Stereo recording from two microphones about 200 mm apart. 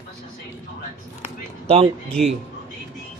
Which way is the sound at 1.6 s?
30° right (ahead or behind).